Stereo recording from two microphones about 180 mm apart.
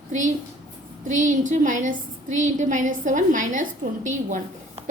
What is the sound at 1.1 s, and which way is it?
A woman's voice, 45° right (ahead or behind).